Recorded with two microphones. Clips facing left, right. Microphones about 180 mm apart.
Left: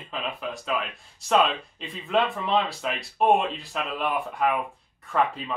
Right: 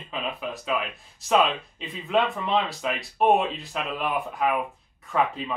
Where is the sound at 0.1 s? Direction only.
Centre (ahead or behind).